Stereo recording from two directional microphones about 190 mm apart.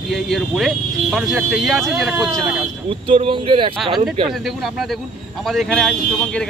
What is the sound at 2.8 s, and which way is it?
Speech, 30° right (ahead or behind).